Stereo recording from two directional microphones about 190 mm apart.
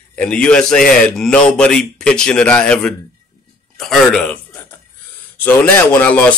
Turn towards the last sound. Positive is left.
turn(degrees=10)  # may be behind; listen again after turning